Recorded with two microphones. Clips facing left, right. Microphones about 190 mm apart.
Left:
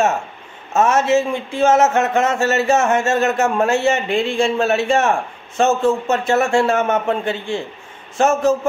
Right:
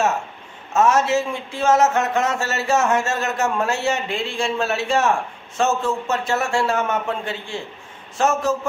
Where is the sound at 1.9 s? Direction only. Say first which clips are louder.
Left 4 dB; 60° left (ahead or behind).